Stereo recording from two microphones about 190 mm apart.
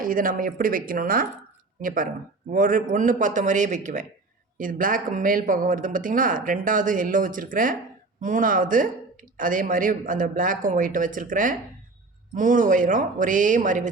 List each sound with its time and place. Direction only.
0.0 s speech: 45° right (ahead or behind)
2.5 s speech: 45° right (ahead or behind)